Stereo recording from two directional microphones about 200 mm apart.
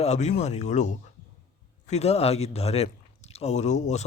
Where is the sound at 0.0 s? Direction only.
35° left (ahead or behind).